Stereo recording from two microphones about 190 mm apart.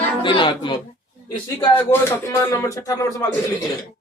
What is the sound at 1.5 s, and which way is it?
Speech, 15° left (ahead or behind).